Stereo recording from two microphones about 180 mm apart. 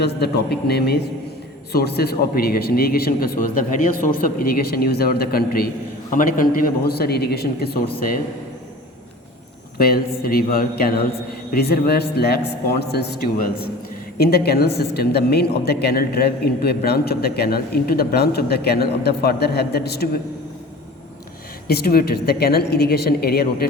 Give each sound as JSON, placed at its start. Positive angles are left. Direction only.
{"t": 0.0, "sound": "a man's voice", "side_deg": 65}
{"t": 9.7, "sound": "a man's voice", "side_deg": 55}
{"t": 14.2, "sound": "a man's voice", "side_deg": 60}
{"t": 21.7, "sound": "a man's voice", "side_deg": 60}